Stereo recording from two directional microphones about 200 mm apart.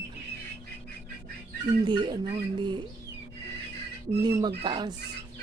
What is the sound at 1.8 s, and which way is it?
Speech, 25° right (ahead or behind).